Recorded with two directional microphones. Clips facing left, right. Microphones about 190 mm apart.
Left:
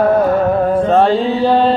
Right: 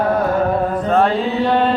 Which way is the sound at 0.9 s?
30° left (ahead or behind).